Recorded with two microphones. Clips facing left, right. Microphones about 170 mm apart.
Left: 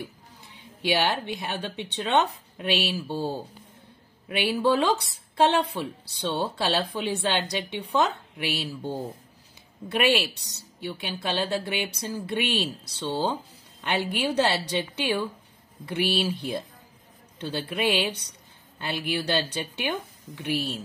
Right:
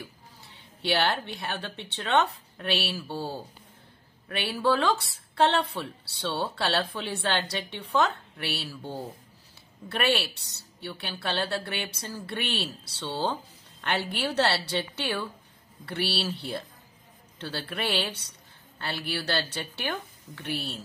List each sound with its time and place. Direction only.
0.8 s a woman's voice: 15° left (ahead or behind)